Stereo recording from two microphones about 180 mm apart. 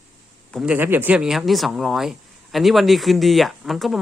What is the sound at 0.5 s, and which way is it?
Speech, 5° right (ahead or behind).